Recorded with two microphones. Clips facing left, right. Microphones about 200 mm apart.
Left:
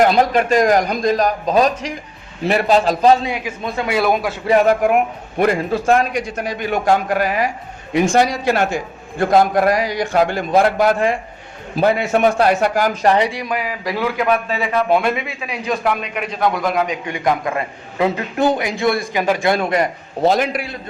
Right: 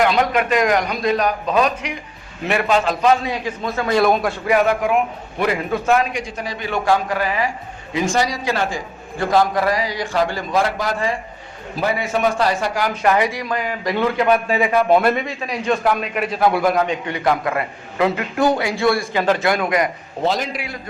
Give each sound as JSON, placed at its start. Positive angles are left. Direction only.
{"t": 0.0, "sound": "a man's voice", "side_deg": 40}
{"t": 3.2, "sound": "a man's voice", "side_deg": 15}
{"t": 3.9, "sound": "a man's voice", "side_deg": 5}
{"t": 4.4, "sound": "a man's voice", "side_deg": 35}
{"t": 5.7, "sound": "a man's voice", "side_deg": 35}
{"t": 6.2, "sound": "speech", "side_deg": 60}
{"t": 8.1, "sound": "a man's voice", "side_deg": 55}
{"t": 13.4, "sound": "a man's voice", "side_deg": 10}
{"t": 14.4, "sound": "a man's voice", "side_deg": -10}
{"t": 14.8, "sound": "a man's voice", "side_deg": 0}
{"t": 16.7, "sound": "a man's voice", "side_deg": 10}
{"t": 19.5, "sound": "a man's voice", "side_deg": 30}
{"t": 20.2, "sound": "a man's voice", "side_deg": 60}